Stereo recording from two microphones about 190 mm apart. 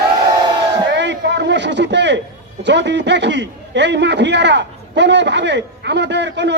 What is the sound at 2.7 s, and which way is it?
A man's voice, 70° right (ahead or behind).